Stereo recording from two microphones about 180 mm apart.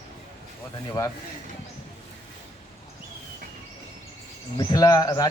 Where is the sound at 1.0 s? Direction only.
20° left (ahead or behind).